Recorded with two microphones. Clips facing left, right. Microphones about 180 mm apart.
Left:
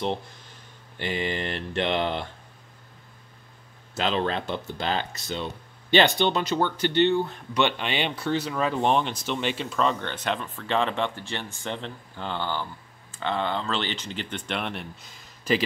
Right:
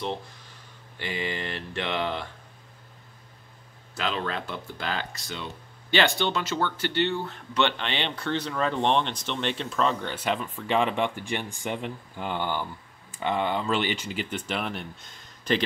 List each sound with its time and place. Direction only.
1.0 s speech: 25° left (ahead or behind)
3.9 s speech: 25° left (ahead or behind); by 15.6 s 5° left (ahead or behind)